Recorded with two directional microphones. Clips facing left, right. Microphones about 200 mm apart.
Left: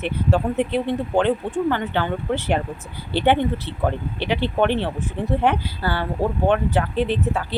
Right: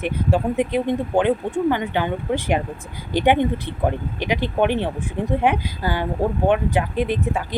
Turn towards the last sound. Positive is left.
turn(degrees=-10)  # may be behind; listen again after turning